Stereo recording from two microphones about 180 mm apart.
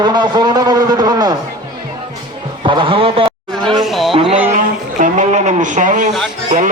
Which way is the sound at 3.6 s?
Centre (ahead or behind).